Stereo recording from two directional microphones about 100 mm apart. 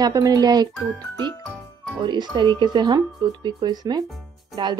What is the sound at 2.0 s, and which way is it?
Speech, 50° right (ahead or behind).